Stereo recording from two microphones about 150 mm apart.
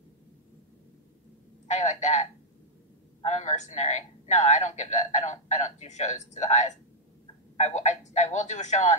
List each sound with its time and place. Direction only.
1.7 s a man's voice: 50° left (ahead or behind)